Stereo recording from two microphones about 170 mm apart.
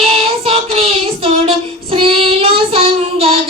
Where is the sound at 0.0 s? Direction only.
35° right (ahead or behind).